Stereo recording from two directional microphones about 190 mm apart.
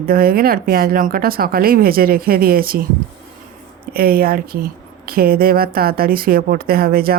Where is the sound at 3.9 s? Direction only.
55° right (ahead or behind).